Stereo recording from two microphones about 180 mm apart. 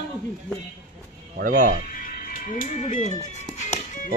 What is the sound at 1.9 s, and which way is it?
Music, 50° left (ahead or behind).